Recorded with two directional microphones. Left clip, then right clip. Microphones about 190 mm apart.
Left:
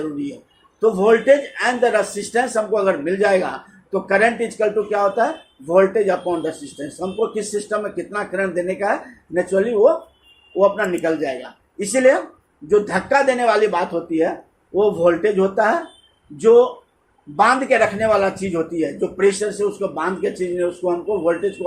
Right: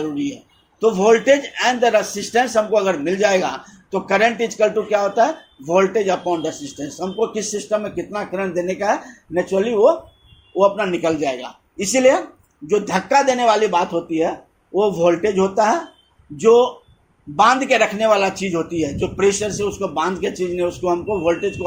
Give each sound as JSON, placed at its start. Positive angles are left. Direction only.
{"t": 0.8, "sound": "speech", "side_deg": -30}